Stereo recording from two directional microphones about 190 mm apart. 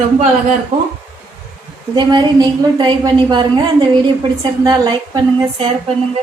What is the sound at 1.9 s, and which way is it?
A woman's voice, 20° right (ahead or behind).